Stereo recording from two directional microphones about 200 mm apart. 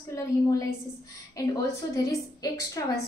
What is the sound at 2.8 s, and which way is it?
Speech, 15° left (ahead or behind).